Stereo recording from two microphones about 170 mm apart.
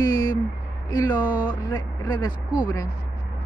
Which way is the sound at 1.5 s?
25° left (ahead or behind).